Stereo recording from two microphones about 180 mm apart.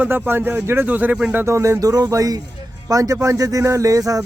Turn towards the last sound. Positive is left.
turn(degrees=-20)  # may be behind; listen again after turning